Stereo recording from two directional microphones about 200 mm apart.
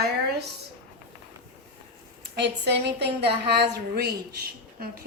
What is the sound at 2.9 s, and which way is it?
Speech, 30° right (ahead or behind).